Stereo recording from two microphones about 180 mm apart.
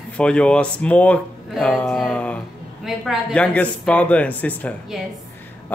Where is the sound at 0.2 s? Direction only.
5° left (ahead or behind).